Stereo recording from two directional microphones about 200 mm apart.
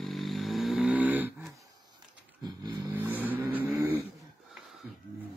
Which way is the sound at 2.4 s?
20° right (ahead or behind).